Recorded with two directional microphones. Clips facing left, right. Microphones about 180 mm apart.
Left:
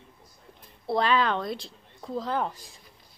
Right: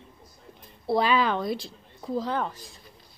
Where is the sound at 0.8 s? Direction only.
5° right (ahead or behind).